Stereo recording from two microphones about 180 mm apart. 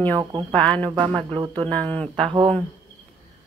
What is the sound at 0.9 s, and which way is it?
Speech, 25° right (ahead or behind).